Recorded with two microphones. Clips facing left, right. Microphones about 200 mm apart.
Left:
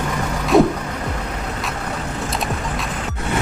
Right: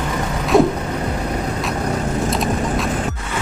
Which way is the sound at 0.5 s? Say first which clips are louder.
Even; centre (ahead or behind).